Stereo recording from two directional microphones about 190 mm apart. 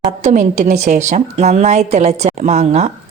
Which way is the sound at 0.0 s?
40° right (ahead or behind).